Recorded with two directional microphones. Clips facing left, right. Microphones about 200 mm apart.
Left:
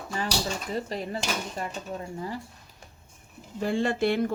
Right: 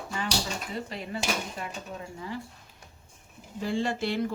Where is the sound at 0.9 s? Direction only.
40° left (ahead or behind).